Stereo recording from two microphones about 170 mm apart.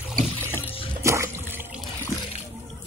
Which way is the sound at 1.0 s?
15° right (ahead or behind).